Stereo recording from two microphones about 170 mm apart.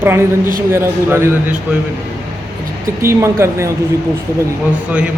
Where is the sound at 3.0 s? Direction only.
15° right (ahead or behind).